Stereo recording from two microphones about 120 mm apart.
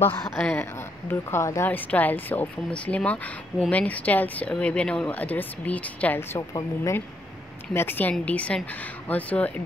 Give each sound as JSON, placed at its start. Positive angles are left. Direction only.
{"t": 0.2, "sound": "speech", "side_deg": 5}
{"t": 1.3, "sound": "speech", "side_deg": 20}
{"t": 6.5, "sound": "speech", "side_deg": 25}